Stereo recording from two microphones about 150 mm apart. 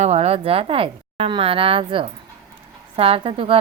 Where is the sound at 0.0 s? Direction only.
45° right (ahead or behind).